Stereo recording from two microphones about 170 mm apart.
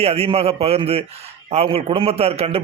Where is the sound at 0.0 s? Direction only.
35° right (ahead or behind).